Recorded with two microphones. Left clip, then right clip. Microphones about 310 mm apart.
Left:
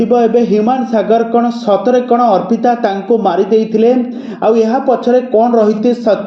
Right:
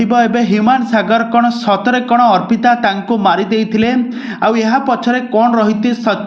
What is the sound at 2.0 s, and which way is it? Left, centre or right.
Speech, right.